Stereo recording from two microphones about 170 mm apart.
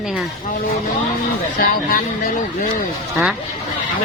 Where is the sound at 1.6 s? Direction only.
55° left (ahead or behind).